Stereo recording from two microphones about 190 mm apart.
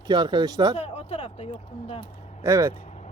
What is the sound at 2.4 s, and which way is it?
Speech, 15° right (ahead or behind).